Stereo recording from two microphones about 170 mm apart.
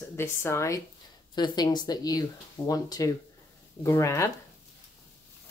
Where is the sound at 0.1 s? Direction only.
15° left (ahead or behind).